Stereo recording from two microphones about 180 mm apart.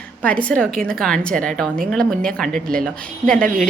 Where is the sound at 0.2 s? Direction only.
5° left (ahead or behind).